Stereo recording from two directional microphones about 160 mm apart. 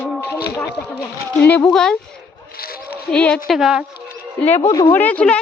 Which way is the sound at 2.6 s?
70° left (ahead or behind).